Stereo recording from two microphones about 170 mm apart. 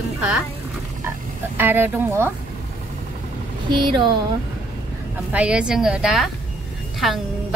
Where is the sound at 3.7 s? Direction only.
30° right (ahead or behind).